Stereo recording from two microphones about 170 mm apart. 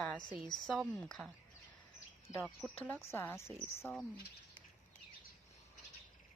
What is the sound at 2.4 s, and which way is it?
Speech, centre (ahead or behind).